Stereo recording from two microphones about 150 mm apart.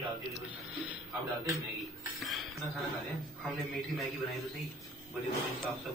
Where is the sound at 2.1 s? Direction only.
Centre (ahead or behind).